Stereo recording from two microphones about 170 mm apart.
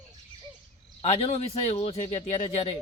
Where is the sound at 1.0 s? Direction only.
35° left (ahead or behind).